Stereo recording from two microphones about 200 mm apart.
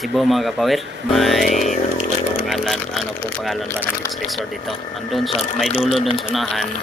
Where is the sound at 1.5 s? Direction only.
40° left (ahead or behind).